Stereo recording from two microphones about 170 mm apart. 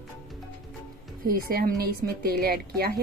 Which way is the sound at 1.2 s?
60° right (ahead or behind).